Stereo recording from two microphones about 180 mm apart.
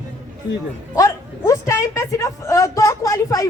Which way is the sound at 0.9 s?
20° left (ahead or behind).